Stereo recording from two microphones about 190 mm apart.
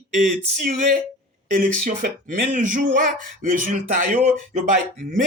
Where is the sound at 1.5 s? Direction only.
45° right (ahead or behind).